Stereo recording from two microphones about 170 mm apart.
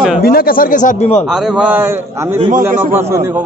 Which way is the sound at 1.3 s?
Centre (ahead or behind).